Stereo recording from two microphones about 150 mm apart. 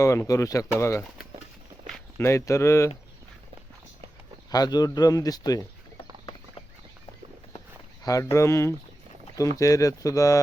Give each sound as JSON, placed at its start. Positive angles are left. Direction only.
{"t": 0.0, "sound": "speech", "side_deg": 20}
{"t": 2.1, "sound": "speech", "side_deg": 20}
{"t": 4.5, "sound": "speech", "side_deg": 25}
{"t": 8.0, "sound": "speech", "side_deg": 20}